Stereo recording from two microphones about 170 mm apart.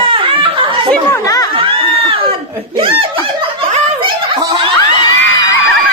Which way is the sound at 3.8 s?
30° right (ahead or behind).